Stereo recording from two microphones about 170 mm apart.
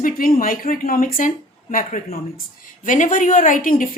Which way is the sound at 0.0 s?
55° left (ahead or behind).